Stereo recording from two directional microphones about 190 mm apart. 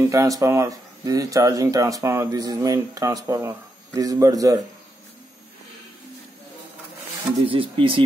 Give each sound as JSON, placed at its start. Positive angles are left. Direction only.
{"t": 0.0, "sound": "speech", "side_deg": -15}
{"t": 7.4, "sound": "speech", "side_deg": -30}